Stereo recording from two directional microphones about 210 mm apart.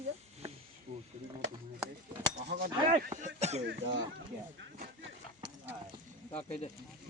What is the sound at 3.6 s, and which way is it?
Speech, 60° right (ahead or behind).